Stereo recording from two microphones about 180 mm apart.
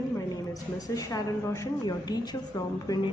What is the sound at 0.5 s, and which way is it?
A woman's voice, 20° left (ahead or behind).